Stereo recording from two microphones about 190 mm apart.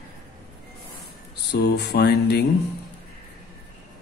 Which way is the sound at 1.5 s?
60° left (ahead or behind).